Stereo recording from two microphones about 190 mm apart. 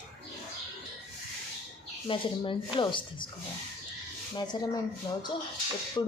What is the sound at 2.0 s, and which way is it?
Speech, 25° left (ahead or behind).